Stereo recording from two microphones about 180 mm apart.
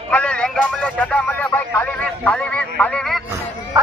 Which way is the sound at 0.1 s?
5° left (ahead or behind).